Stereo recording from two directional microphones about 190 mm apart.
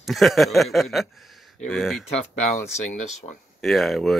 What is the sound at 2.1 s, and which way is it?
Speech, 40° left (ahead or behind).